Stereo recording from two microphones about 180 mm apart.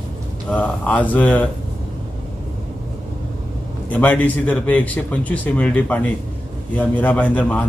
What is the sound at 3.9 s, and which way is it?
Speech, 10° left (ahead or behind).